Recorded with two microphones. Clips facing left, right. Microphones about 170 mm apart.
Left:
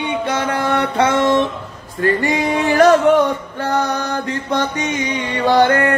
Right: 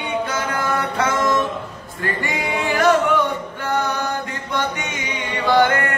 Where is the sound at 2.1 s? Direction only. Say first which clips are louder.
Left 6 dB; 40° left (ahead or behind).